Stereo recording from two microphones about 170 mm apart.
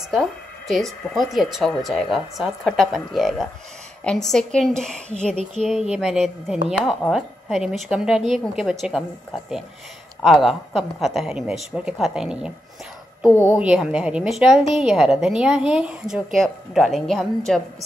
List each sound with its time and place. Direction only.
0.1 s a woman's voice: centre (ahead or behind)
13.3 s a woman's voice: 15° left (ahead or behind)
13.6 s a woman's voice: 5° right (ahead or behind)